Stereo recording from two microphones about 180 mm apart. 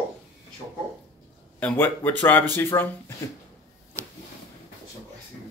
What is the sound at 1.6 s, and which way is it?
Speech, 10° left (ahead or behind).